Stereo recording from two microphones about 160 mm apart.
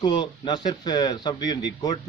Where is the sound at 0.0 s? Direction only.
30° left (ahead or behind).